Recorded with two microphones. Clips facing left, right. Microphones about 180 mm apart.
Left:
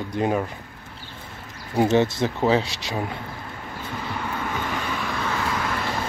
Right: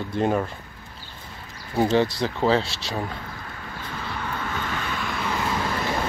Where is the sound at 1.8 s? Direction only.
20° left (ahead or behind).